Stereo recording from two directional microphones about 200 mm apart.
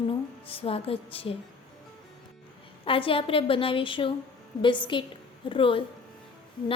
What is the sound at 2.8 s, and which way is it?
A woman's voice, 25° left (ahead or behind).